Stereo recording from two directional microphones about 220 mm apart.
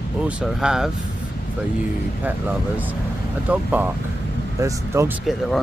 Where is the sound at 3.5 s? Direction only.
10° right (ahead or behind).